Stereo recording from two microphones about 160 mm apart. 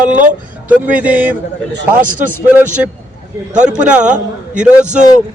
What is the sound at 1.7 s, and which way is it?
Speech, 55° right (ahead or behind).